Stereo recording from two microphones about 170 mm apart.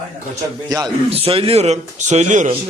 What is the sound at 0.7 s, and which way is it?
Speech, 20° right (ahead or behind).